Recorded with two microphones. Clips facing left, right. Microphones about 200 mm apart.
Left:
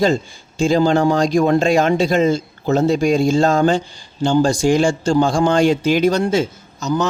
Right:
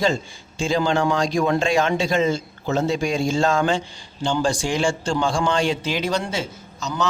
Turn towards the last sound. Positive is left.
turn(degrees=40)  # may be behind; listen again after turning